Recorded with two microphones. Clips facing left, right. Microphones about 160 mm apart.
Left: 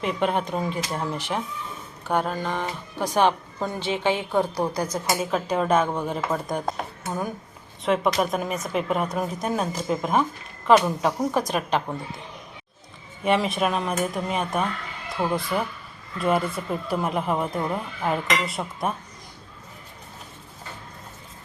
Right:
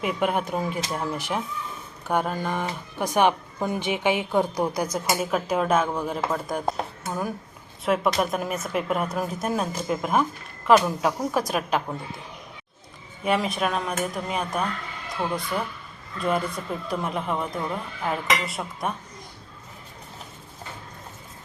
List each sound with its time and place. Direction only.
0.0 s a woman's voice: 10° right (ahead or behind)
13.2 s speech: centre (ahead or behind)